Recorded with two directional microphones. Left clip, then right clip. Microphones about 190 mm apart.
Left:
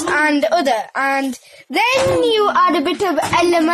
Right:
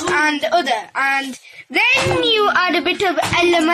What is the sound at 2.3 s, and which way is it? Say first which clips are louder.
Speech: left 1 dB; 20° left (ahead or behind).